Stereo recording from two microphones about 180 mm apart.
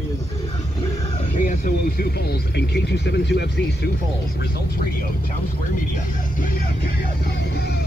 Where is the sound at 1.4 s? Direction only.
50° left (ahead or behind); by 3.9 s 70° left (ahead or behind).